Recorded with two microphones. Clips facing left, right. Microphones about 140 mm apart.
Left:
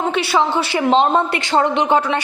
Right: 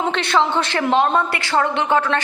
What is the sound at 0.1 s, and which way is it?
A woman's voice, 10° left (ahead or behind).